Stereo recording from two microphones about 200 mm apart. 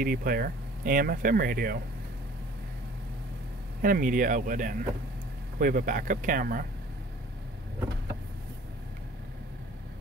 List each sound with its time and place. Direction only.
0.0 s speech: 45° right (ahead or behind)
3.8 s speech: 45° right (ahead or behind)